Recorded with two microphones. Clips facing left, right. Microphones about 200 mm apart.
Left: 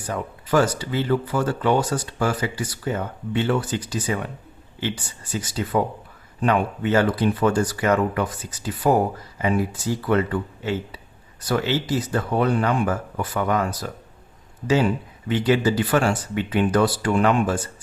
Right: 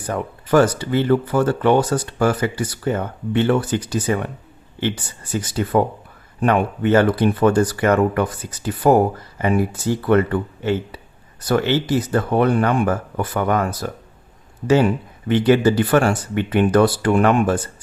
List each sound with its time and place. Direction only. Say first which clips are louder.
0.1 s speech: right 4 dB; 55° right (ahead or behind)
5.3 s speech: right 5 dB; 55° right (ahead or behind)
15.3 s speech: right 5 dB; 60° right (ahead or behind)